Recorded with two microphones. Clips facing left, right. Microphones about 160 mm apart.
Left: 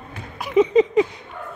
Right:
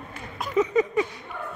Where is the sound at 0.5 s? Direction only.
20° left (ahead or behind).